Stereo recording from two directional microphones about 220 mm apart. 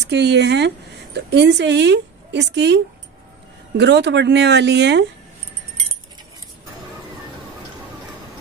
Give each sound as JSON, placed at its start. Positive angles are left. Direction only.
{"t": 0.0, "sound": "speech", "side_deg": -50}